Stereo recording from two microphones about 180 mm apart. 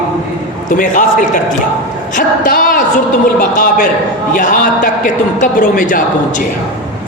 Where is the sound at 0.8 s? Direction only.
45° left (ahead or behind).